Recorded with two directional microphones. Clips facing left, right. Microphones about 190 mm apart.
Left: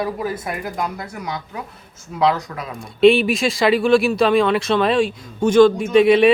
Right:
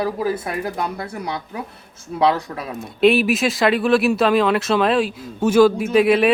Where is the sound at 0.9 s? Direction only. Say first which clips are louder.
Right 2 dB; 30° right (ahead or behind).